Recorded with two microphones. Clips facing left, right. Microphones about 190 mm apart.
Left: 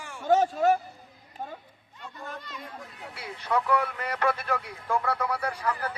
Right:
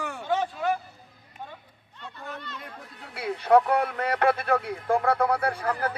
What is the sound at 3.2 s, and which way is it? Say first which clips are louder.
Speech: right 9 dB; 60° right (ahead or behind).